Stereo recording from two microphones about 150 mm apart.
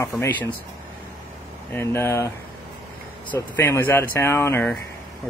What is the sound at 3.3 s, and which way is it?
Speech, 15° left (ahead or behind).